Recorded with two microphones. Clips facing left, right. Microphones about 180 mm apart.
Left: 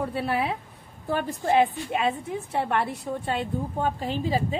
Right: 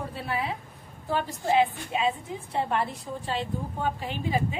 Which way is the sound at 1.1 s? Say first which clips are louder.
Left 2 dB; 50° left (ahead or behind).